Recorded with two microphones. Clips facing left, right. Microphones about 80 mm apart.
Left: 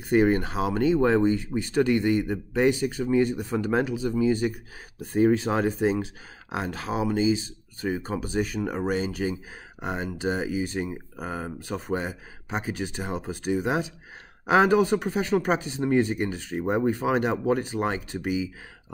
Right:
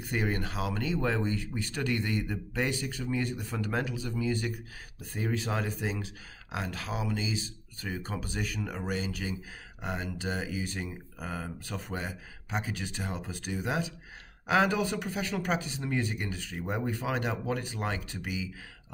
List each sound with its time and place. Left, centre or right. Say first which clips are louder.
0.1 s speech: left 11 dB; left